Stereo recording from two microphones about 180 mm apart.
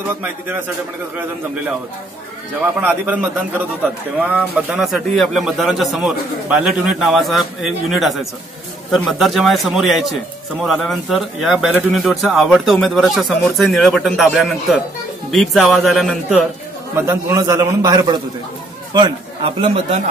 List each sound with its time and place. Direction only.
2.8 s a man's voice: 10° right (ahead or behind)
16.9 s a man's voice: 15° right (ahead or behind); by 20.0 s 30° right (ahead or behind)